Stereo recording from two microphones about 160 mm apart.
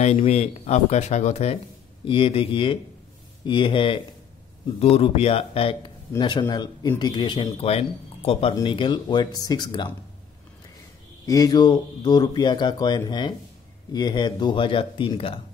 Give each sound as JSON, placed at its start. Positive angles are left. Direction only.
{"t": 0.0, "sound": "speech", "side_deg": 45}
{"t": 11.2, "sound": "speech", "side_deg": 25}